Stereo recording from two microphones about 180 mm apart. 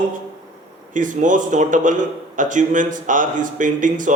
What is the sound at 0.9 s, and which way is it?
A man's voice, 45° right (ahead or behind).